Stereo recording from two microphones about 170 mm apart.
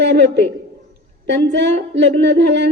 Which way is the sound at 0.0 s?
90° right.